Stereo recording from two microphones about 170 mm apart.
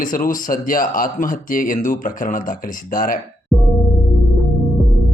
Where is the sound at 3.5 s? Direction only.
Centre (ahead or behind).